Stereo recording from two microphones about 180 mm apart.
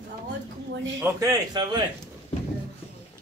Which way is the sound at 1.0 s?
15° right (ahead or behind).